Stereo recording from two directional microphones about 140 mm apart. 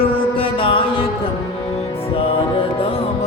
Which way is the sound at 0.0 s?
40° left (ahead or behind).